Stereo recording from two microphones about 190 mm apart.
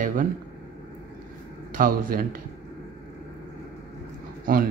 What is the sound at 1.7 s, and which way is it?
Speech, 45° right (ahead or behind).